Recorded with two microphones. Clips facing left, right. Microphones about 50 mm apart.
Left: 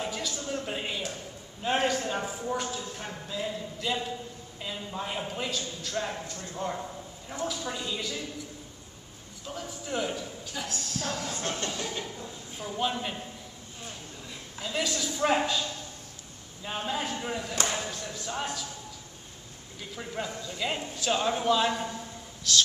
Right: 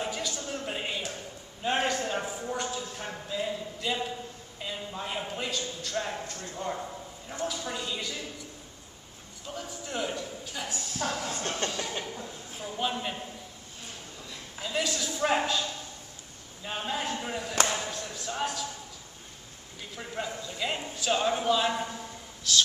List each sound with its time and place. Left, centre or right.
0.0 s a sound: centre
3.0 s speech: centre
6.2 s train: right
6.5 s speech: centre
9.5 s speech: centre
11.2 s train: right
12.5 s speech: centre
14.6 s speech: centre
16.6 s speech: centre
19.8 s speech: centre